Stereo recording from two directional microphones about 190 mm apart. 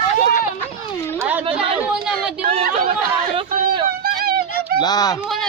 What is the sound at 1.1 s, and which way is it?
A woman's voice, 10° right (ahead or behind).